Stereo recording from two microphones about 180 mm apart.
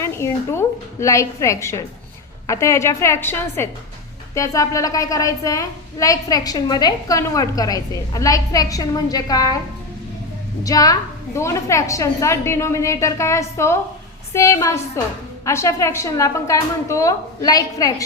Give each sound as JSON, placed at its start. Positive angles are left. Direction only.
{"t": 0.0, "sound": "a woman's voice", "side_deg": 15}
{"t": 10.6, "sound": "a woman's voice", "side_deg": 20}